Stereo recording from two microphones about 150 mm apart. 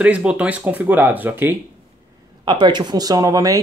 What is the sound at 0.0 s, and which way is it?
Speech, 10° right (ahead or behind).